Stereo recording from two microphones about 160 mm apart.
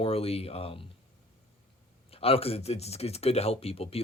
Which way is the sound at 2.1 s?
35° left (ahead or behind).